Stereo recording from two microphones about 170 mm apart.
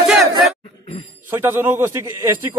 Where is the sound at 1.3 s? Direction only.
15° right (ahead or behind).